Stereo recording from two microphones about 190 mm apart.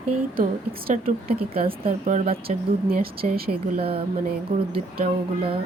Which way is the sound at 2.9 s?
50° right (ahead or behind).